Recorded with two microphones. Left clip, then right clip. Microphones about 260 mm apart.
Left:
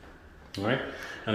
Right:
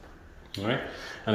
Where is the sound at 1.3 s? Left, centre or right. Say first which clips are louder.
Right 2 dB; centre.